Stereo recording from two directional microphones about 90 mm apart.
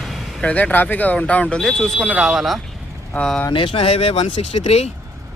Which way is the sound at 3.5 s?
70° left (ahead or behind).